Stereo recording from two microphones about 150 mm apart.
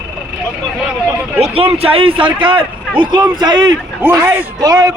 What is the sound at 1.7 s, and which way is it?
A man's voice, 40° right (ahead or behind).